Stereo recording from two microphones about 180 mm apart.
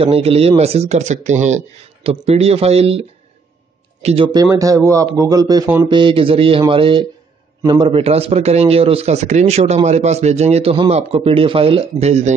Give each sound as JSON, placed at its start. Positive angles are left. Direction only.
{"t": 0.0, "sound": "a man's voice", "side_deg": -35}
{"t": 5.9, "sound": "a man's voice", "side_deg": -30}